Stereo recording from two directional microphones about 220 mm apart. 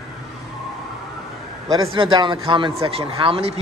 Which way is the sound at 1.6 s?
15° right (ahead or behind).